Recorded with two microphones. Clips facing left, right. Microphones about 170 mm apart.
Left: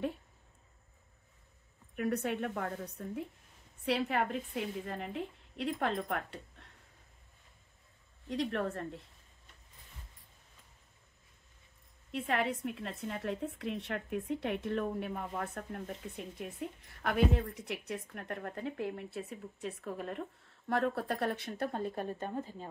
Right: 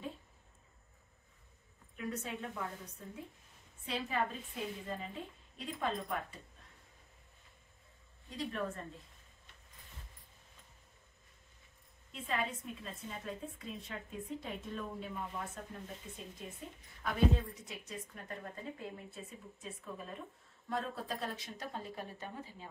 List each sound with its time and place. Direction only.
2.0 s a woman's voice: 65° left (ahead or behind)
3.8 s a woman's voice: 70° left (ahead or behind)
8.3 s a woman's voice: 70° left (ahead or behind)
12.1 s a woman's voice: 70° left (ahead or behind); by 22.7 s 45° left (ahead or behind)